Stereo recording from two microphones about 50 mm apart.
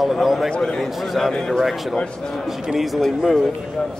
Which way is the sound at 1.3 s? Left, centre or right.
Centre.